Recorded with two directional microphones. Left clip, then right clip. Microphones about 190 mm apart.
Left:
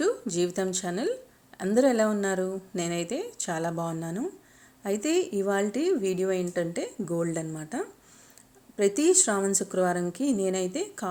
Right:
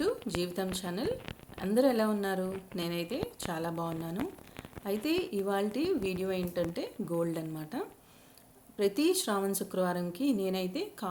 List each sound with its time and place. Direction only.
0.0 s a woman's voice: 30° left (ahead or behind)
9.0 s a woman's voice: 30° left (ahead or behind)